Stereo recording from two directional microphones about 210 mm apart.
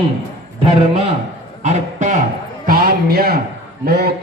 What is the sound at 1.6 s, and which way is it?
A man's voice, 35° right (ahead or behind).